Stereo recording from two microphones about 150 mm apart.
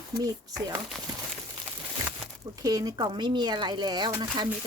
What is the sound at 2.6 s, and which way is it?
Speech, 25° right (ahead or behind).